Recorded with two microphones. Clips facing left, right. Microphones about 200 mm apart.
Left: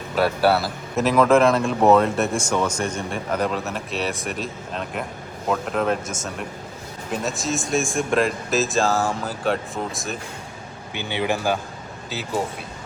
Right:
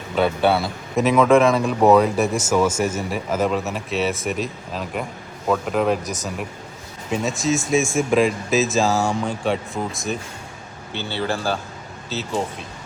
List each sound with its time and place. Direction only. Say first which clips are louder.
0.2 s speech: right 1 dB; 5° left (ahead or behind)
10.9 s speech: left 1 dB; 15° left (ahead or behind)